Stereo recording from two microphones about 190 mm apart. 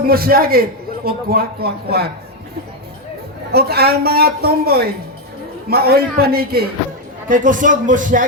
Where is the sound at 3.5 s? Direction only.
55° right (ahead or behind).